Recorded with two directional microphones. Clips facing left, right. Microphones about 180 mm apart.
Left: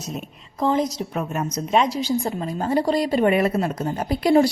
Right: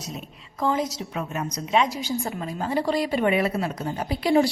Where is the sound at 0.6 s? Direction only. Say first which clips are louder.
Left 4 dB; 35° left (ahead or behind).